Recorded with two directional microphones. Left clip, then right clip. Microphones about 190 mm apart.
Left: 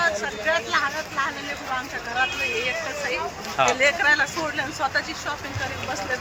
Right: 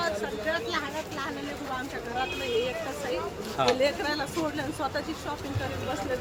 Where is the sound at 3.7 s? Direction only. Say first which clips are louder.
Left 8 dB; 25° right (ahead or behind).